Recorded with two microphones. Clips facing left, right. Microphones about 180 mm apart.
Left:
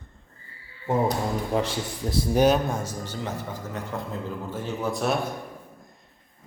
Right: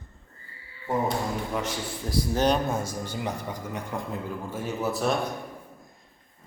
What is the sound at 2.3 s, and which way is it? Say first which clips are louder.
Speech: left 4 dB; 10° left (ahead or behind).